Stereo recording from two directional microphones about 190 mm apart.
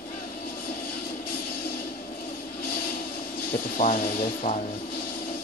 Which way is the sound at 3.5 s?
45° left (ahead or behind).